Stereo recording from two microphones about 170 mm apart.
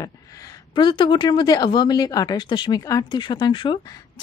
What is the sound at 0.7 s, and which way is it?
Speech, 30° left (ahead or behind).